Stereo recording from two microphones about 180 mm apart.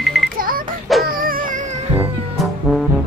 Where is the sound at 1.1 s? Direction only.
55° right (ahead or behind).